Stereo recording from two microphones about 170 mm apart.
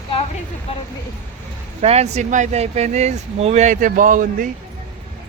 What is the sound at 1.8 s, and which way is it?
Speech, 40° right (ahead or behind).